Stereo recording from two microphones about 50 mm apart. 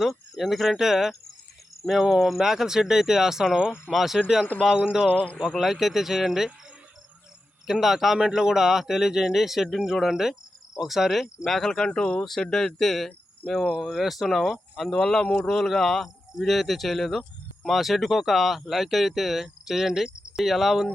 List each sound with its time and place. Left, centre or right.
0.0 s speech: centre
3.9 s speech: centre
5.5 s speech: centre
7.7 s speech: centre
8.2 s speech: centre
11.4 s speech: centre
20.1 s cricket: centre
20.4 s speech: centre